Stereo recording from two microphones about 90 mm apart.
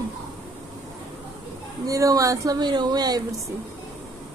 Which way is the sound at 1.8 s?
40° right (ahead or behind).